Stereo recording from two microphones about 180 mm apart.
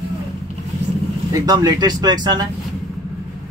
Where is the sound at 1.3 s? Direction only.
20° right (ahead or behind).